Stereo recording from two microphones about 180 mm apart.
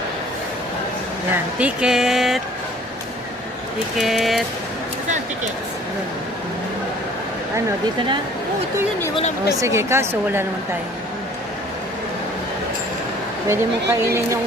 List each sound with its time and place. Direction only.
1.5 s speech: 5° right (ahead or behind)
3.9 s speech: centre (ahead or behind)
9.6 s a woman's voice: 15° right (ahead or behind)
13.5 s a woman's voice: 15° right (ahead or behind)